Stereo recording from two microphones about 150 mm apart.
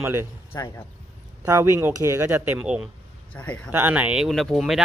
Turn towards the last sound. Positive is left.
turn(degrees=0)  # may be behind; listen again after turning